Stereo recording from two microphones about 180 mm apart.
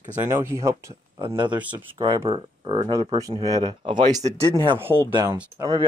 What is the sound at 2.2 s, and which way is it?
Speech, 25° right (ahead or behind).